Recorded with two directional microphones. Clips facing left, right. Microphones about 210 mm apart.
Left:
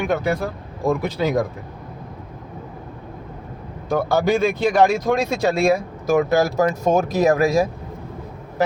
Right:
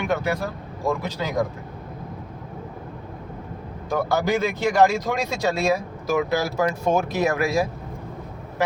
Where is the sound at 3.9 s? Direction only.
55° left (ahead or behind).